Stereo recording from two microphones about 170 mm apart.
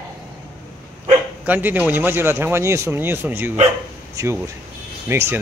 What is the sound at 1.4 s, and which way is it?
Speech, 10° right (ahead or behind).